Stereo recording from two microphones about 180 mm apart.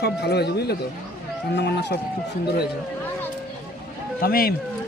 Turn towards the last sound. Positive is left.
turn(degrees=55)  # may be behind; listen again after turning